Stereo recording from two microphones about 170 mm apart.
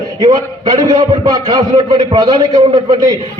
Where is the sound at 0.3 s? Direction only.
25° right (ahead or behind).